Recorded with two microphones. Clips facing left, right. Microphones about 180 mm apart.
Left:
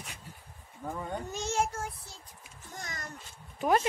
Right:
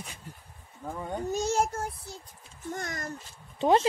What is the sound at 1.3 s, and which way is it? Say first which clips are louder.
Child singing: right 4 dB; 40° right (ahead or behind).